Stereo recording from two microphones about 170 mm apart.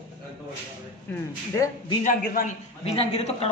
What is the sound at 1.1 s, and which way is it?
Speech, 10° left (ahead or behind).